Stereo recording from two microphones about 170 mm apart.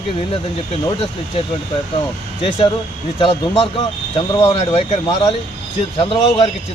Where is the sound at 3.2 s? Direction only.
35° left (ahead or behind).